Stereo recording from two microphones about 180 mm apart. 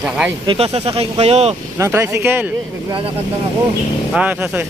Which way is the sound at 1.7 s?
15° right (ahead or behind).